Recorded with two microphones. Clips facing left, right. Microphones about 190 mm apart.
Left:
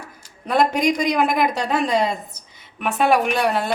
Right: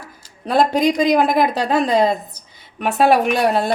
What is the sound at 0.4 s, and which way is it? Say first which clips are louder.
Speech: right 3 dB; 30° right (ahead or behind).